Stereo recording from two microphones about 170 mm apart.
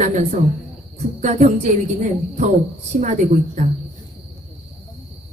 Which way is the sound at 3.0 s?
45° right (ahead or behind).